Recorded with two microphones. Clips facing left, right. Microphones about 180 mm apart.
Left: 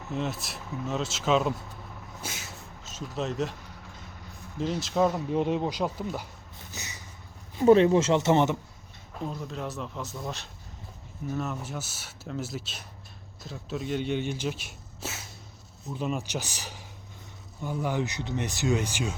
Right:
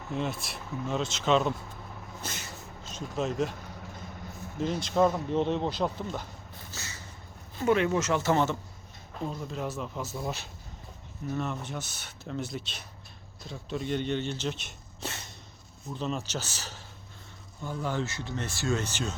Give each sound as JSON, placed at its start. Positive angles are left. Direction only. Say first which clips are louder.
{"t": 0.1, "sound": "speech", "louder": "left 1 dB", "side_deg": 0}
{"t": 2.2, "sound": "a sound", "louder": "even", "side_deg": 5}
{"t": 2.9, "sound": "speech", "louder": "right 1 dB", "side_deg": 0}
{"t": 4.6, "sound": "a man's voice", "louder": "even", "side_deg": 0}
{"t": 6.7, "sound": "a sound", "louder": "left 2 dB", "side_deg": 15}
{"t": 7.6, "sound": "speech", "louder": "left 7 dB", "side_deg": 30}
{"t": 9.1, "sound": "speech", "louder": "even", "side_deg": 0}
{"t": 11.3, "sound": "a man's voice", "louder": "even", "side_deg": 5}